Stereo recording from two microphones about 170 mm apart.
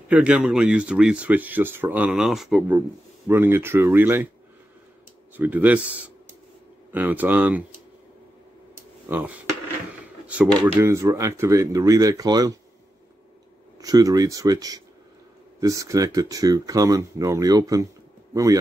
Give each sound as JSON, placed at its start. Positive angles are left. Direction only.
{"t": 0.1, "sound": "speech", "side_deg": -5}
{"t": 3.3, "sound": "speech", "side_deg": -15}
{"t": 5.3, "sound": "speech", "side_deg": -10}
{"t": 9.1, "sound": "speech", "side_deg": -10}
{"t": 13.7, "sound": "speech", "side_deg": -20}